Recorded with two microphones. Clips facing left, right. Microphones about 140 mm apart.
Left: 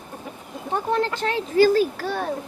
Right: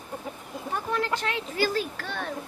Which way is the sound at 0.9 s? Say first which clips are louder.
Left 5 dB; 30° left (ahead or behind).